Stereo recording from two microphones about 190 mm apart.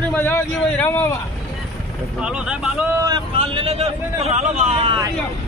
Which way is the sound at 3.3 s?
30° right (ahead or behind).